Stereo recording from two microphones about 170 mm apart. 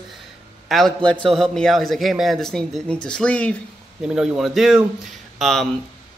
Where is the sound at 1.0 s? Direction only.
30° right (ahead or behind).